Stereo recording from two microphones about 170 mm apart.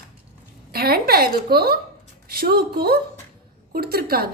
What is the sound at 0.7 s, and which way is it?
A woman's voice, 65° right (ahead or behind).